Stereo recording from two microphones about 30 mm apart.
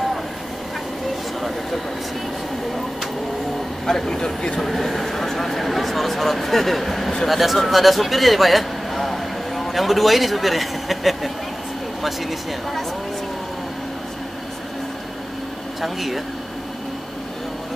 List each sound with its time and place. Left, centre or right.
3.8 s speech: centre
4.6 s a man's voice: centre
15.8 s a man's voice: centre